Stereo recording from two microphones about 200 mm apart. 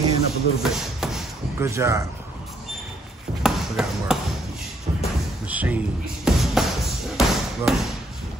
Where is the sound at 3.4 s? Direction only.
Centre (ahead or behind).